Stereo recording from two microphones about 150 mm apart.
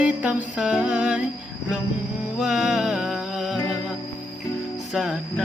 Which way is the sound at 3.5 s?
25° left (ahead or behind).